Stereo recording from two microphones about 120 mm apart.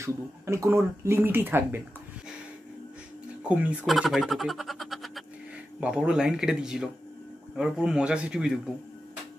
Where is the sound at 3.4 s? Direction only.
10° right (ahead or behind).